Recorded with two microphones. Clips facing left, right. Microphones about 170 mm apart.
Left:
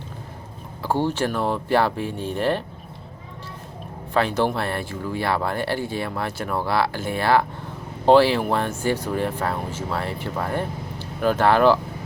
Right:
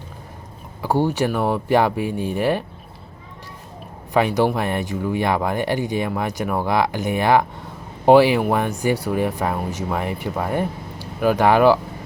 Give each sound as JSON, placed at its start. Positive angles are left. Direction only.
{"t": 0.8, "sound": "speech", "side_deg": -15}
{"t": 4.1, "sound": "speech", "side_deg": -15}